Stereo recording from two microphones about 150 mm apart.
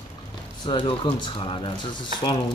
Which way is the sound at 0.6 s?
35° left (ahead or behind).